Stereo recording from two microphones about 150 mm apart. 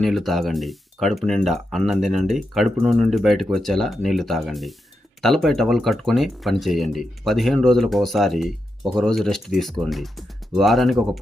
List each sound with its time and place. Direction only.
0.0 s speech: centre (ahead or behind)